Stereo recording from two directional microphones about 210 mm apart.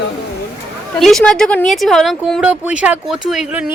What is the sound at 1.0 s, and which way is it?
Speech, centre (ahead or behind).